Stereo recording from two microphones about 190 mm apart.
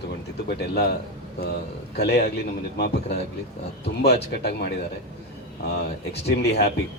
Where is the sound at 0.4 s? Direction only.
60° left (ahead or behind).